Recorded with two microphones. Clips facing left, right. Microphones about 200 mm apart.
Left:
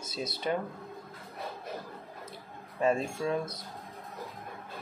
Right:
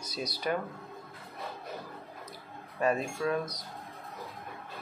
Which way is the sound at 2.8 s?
25° left (ahead or behind).